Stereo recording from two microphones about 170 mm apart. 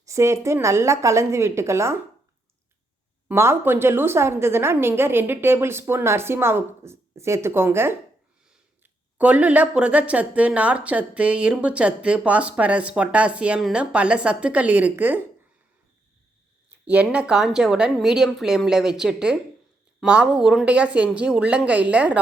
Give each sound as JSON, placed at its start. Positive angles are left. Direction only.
{"t": 0.0, "sound": "speech", "side_deg": -15}
{"t": 3.2, "sound": "speech", "side_deg": -15}
{"t": 16.8, "sound": "a woman's voice", "side_deg": -5}